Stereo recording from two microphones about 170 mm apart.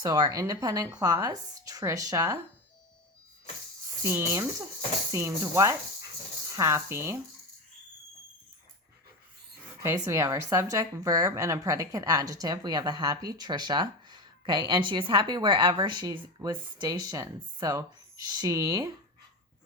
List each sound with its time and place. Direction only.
0.0 s a woman's voice: 25° right (ahead or behind)
4.0 s speech: 15° right (ahead or behind)
9.8 s a woman's voice: 15° right (ahead or behind)